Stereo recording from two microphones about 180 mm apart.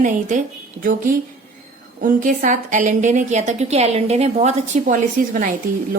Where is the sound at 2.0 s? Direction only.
50° right (ahead or behind).